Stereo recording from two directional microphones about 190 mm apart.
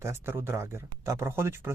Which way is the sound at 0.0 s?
15° right (ahead or behind).